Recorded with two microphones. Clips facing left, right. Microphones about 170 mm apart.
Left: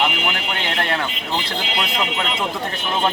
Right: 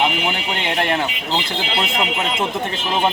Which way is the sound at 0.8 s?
15° right (ahead or behind).